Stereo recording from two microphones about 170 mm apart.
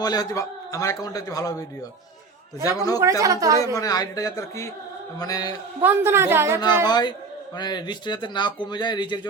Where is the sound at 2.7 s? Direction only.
20° left (ahead or behind).